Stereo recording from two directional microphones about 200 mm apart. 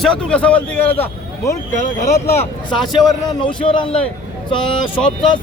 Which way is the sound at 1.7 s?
35° left (ahead or behind).